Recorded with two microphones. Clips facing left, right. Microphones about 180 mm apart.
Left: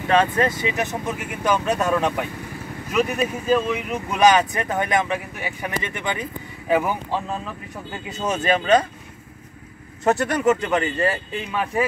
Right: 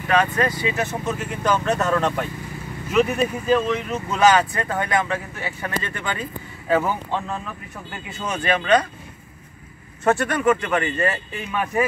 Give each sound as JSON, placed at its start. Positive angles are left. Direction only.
{"t": 0.1, "sound": "speech", "side_deg": 25}
{"t": 10.0, "sound": "speech", "side_deg": 20}